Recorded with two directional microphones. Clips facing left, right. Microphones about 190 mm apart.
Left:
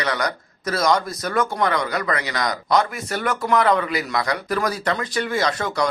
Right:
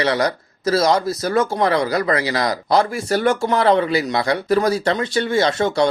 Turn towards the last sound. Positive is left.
turn(degrees=-25)  # may be behind; listen again after turning